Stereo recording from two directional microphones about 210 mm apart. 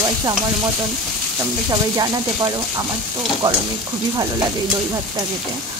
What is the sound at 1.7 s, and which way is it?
Speech, 20° right (ahead or behind).